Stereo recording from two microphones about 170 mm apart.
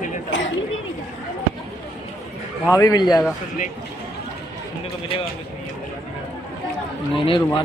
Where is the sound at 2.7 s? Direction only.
20° left (ahead or behind).